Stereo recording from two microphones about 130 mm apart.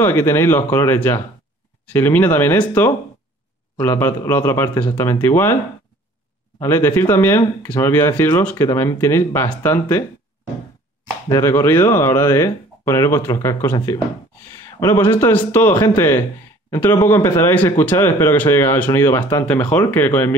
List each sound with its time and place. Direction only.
0.0 s speech: 20° left (ahead or behind)
6.6 s speech: 20° left (ahead or behind)
11.2 s speech: 25° left (ahead or behind)
14.8 s speech: 20° left (ahead or behind)